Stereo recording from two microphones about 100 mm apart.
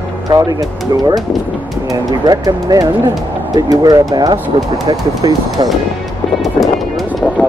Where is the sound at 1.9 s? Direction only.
40° right (ahead or behind).